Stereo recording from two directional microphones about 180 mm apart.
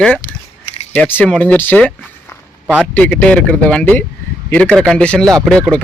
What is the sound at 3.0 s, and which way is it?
Speech, 5° left (ahead or behind).